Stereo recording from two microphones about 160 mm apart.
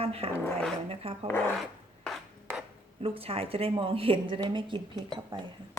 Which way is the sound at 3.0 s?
35° right (ahead or behind).